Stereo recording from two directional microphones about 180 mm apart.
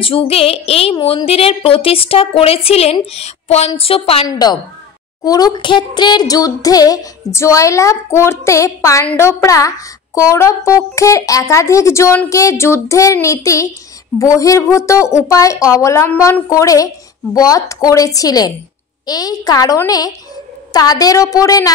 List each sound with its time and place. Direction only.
0.0 s a woman's voice: 30° left (ahead or behind)